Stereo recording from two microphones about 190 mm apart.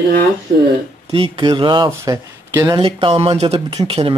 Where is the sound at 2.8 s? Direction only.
30° right (ahead or behind).